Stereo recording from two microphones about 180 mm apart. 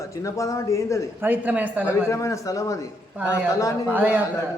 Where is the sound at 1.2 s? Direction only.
10° right (ahead or behind).